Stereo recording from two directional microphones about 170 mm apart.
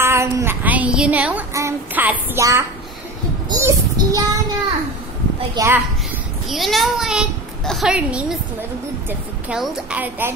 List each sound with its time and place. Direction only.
0.0 s speech: 15° right (ahead or behind)
3.4 s child singing: 20° right (ahead or behind)
5.5 s a woman's voice: 20° right (ahead or behind)
6.5 s a child's voice: centre (ahead or behind)
9.5 s a woman's voice: 5° right (ahead or behind)